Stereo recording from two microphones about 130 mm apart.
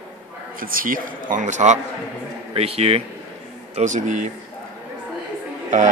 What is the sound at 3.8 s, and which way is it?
Speech, 65° right (ahead or behind).